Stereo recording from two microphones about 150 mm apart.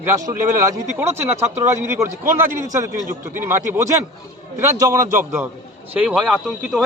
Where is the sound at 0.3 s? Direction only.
20° right (ahead or behind).